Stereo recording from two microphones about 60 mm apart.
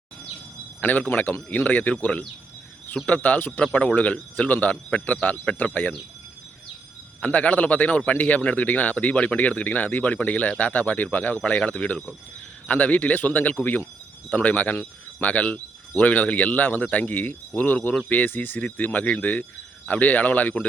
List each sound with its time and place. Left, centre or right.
0.8 s speech: left
3.6 s speech: centre
7.2 s speech: left